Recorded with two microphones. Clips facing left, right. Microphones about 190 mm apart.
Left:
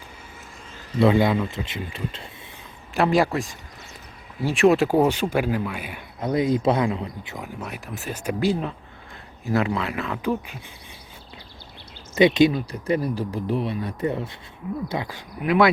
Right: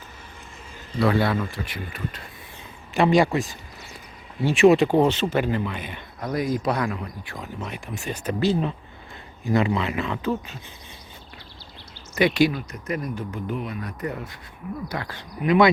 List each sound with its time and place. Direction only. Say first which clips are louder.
0.9 s speech: left 3 dB; 20° left (ahead or behind)
2.9 s speech: right 1 dB; centre (ahead or behind)
6.1 s speech: left 4 dB; 25° left (ahead or behind)
7.6 s speech: right 1 dB; 5° left (ahead or behind)
10.2 s speech: left 1 dB; 10° left (ahead or behind)
12.1 s speech: left 3 dB; 20° left (ahead or behind)
14.8 s speech: left 3 dB; 15° left (ahead or behind)
15.4 s speech: right 1 dB; 5° left (ahead or behind)